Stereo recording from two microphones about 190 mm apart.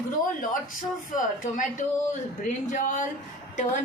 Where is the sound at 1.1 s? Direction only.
40° left (ahead or behind).